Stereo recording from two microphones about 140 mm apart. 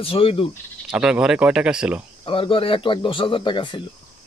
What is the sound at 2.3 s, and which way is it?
Speech, 40° left (ahead or behind).